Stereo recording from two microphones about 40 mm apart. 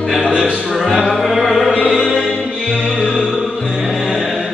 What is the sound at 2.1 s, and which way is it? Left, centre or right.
Music, centre.